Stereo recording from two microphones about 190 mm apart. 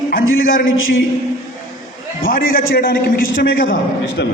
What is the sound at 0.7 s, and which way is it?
Speech, 90° left.